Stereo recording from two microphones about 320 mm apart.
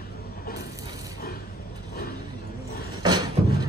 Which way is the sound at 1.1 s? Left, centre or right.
Left.